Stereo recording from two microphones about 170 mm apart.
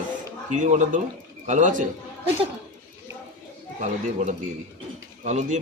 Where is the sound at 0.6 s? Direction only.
45° right (ahead or behind).